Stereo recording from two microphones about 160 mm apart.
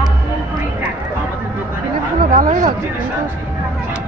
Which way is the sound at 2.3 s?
60° right (ahead or behind).